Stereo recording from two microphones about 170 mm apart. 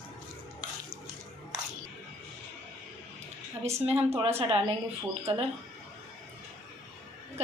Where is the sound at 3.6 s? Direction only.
40° right (ahead or behind).